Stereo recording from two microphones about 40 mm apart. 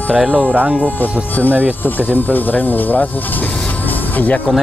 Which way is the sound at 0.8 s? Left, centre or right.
Left.